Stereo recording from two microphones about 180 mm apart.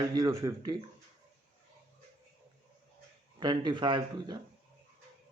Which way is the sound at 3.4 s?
25° right (ahead or behind).